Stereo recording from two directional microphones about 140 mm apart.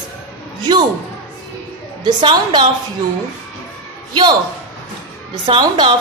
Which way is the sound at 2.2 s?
35° right (ahead or behind).